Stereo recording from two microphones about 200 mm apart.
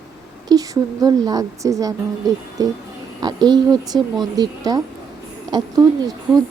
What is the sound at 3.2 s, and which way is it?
A woman's voice, 20° right (ahead or behind).